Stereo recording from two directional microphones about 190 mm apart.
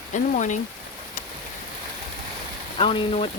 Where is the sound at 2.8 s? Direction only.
30° left (ahead or behind).